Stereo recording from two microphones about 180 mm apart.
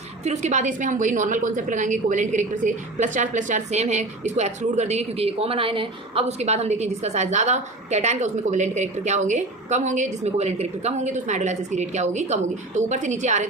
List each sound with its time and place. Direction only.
0.3 s a woman's voice: 40° right (ahead or behind)